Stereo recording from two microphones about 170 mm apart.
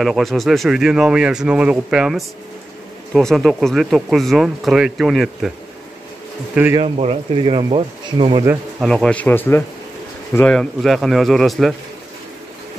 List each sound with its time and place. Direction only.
0.0 s speech: centre (ahead or behind)
6.5 s speech: 15° right (ahead or behind)
6.8 s speech: 35° right (ahead or behind)
8.8 s a man's voice: 5° left (ahead or behind)